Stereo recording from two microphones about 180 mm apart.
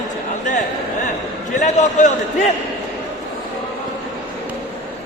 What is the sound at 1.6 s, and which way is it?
Speech, 45° left (ahead or behind).